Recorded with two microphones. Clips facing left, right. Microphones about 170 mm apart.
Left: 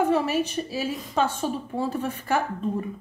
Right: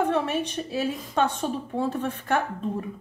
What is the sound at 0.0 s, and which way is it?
A woman's voice, 5° left (ahead or behind).